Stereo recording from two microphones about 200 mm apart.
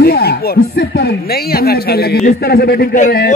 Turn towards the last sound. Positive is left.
turn(degrees=50)  # may be behind; listen again after turning